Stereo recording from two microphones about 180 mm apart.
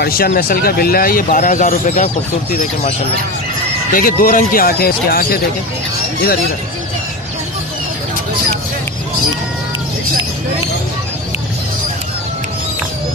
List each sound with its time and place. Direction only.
0.0 s speech: 55° left (ahead or behind)
3.9 s speech: 50° left (ahead or behind)